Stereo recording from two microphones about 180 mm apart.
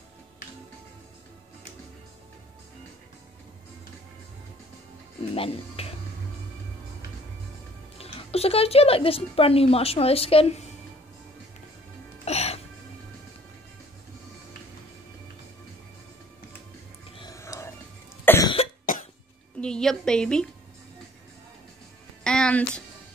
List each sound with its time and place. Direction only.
5.3 s speech: 30° left (ahead or behind)
8.0 s speech: 35° left (ahead or behind)
12.3 s music: 35° left (ahead or behind)
17.2 s whispering: 20° left (ahead or behind)
18.2 s cough: 10° left (ahead or behind)
19.6 s a woman's voice: 5° left (ahead or behind)
22.2 s music: 5° left (ahead or behind)